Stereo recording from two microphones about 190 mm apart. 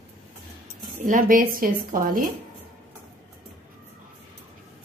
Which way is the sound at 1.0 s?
50° right (ahead or behind).